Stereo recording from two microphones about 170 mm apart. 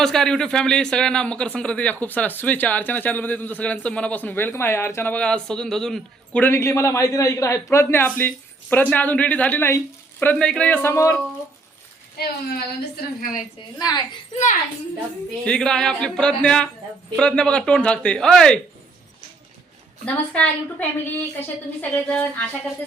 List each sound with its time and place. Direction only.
0.0 s a man's voice: 5° left (ahead or behind)
12.1 s a woman's voice: 65° left (ahead or behind)
13.7 s a woman's voice: 20° left (ahead or behind)
15.4 s speech: 5° left (ahead or behind)
20.1 s a man's voice: 10° left (ahead or behind)